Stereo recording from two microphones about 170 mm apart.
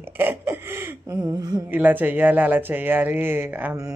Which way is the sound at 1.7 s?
10° right (ahead or behind).